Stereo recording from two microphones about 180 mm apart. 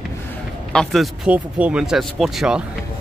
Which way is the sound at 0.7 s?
Centre (ahead or behind).